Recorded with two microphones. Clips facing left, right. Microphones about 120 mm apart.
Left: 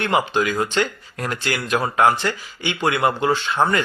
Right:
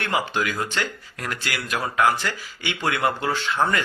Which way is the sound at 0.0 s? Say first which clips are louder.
Left 5 dB; 25° left (ahead or behind).